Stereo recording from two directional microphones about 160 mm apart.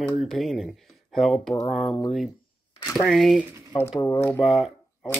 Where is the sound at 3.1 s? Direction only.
5° left (ahead or behind).